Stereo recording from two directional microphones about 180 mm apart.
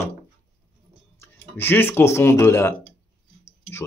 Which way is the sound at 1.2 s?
10° left (ahead or behind).